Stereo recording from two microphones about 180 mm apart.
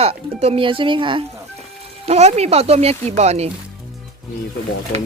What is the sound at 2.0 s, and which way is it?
Speech, 40° right (ahead or behind).